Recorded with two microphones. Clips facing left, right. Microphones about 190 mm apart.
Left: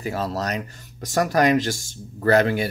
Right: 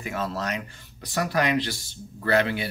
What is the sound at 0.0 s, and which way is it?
Speech, 35° left (ahead or behind).